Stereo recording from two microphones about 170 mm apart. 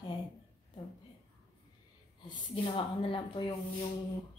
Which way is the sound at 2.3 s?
30° left (ahead or behind).